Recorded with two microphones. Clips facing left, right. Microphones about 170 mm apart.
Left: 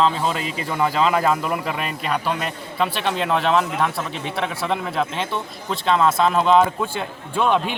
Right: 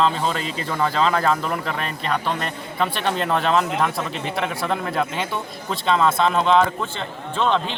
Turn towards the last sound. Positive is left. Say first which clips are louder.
# left 1 dB
turn(degrees=10)  # may be behind; listen again after turning